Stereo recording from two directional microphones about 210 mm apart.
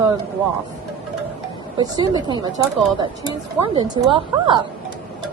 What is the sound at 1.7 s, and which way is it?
Speech, 20° right (ahead or behind).